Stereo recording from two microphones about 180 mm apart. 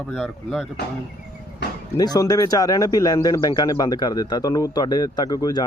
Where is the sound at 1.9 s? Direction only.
20° left (ahead or behind).